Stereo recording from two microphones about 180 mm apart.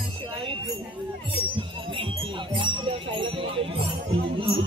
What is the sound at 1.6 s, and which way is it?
Speech, 30° right (ahead or behind).